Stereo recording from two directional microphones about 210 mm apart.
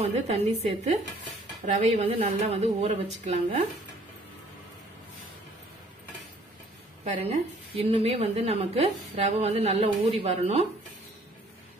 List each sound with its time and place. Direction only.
0.0 s a woman's voice: 30° right (ahead or behind)
1.7 s a woman's voice: 30° right (ahead or behind)
7.1 s a woman's voice: 30° right (ahead or behind)